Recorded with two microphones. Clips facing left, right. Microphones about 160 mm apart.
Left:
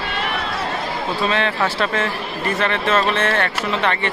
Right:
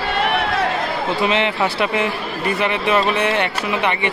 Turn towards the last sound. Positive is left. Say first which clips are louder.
# right 1 dB
turn(degrees=-15)  # may be behind; listen again after turning